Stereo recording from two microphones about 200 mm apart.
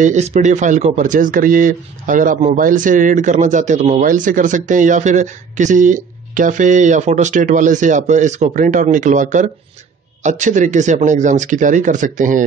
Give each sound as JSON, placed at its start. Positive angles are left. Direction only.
{"t": 0.0, "sound": "speech", "side_deg": -35}